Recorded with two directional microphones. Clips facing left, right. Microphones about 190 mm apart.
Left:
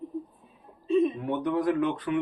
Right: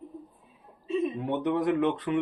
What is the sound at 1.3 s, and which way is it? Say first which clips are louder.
Speech: even; 25° right (ahead or behind).